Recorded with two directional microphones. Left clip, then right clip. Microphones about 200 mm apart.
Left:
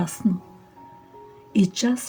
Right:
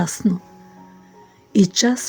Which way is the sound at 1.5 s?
40° right (ahead or behind).